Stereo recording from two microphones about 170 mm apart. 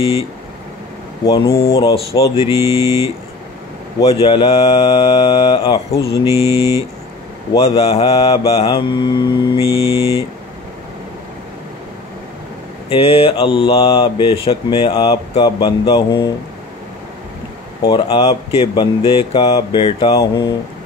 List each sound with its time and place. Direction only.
1.2 s mantra: 20° left (ahead or behind)
2.5 s mantra: 15° right (ahead or behind)
4.0 s mantra: 35° left (ahead or behind)
6.2 s mantra: 15° right (ahead or behind)
7.5 s speech: 35° left (ahead or behind)
9.6 s mantra: 15° right (ahead or behind)
12.9 s speech: 35° left (ahead or behind)
17.8 s speech: 30° left (ahead or behind)
20.2 s mantra: 25° left (ahead or behind)